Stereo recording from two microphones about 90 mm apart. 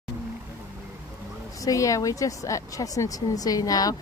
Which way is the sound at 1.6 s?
40° left (ahead or behind).